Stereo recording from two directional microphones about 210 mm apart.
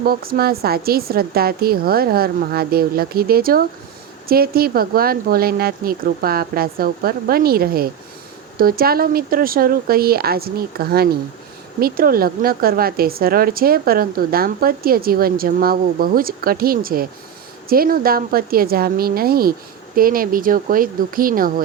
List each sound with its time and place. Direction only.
0.0 s a woman's voice: 45° right (ahead or behind)